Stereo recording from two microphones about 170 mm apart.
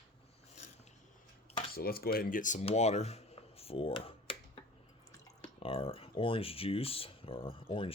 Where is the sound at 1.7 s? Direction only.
65° left (ahead or behind).